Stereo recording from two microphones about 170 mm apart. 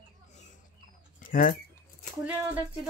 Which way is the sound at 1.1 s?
55° left (ahead or behind).